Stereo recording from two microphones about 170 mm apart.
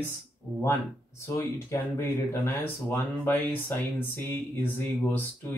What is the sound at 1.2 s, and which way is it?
Speech, 15° left (ahead or behind).